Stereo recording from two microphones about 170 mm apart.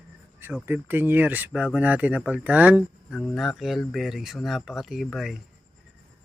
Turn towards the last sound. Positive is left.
turn(degrees=0)  # may be behind; listen again after turning